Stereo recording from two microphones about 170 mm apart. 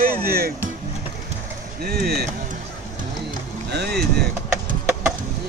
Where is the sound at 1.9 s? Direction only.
65° right (ahead or behind).